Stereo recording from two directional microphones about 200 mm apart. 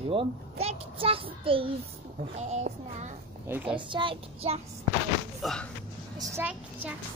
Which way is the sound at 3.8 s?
25° right (ahead or behind).